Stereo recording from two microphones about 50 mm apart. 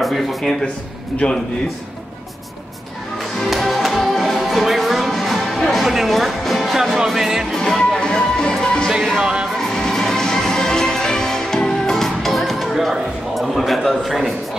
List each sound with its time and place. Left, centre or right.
0.0 s speech: centre
1.2 s a man's voice: left
3.4 s music: centre
7.5 s music: centre
9.1 s music: centre
9.5 s music: centre